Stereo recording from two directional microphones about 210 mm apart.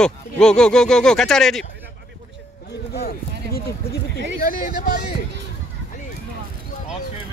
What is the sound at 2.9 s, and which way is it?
Speech, 50° left (ahead or behind).